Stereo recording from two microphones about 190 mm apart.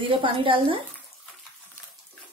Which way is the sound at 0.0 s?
25° right (ahead or behind).